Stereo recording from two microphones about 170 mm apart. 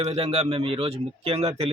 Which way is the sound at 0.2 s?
35° right (ahead or behind).